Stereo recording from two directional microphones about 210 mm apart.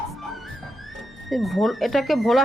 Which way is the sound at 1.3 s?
Centre (ahead or behind).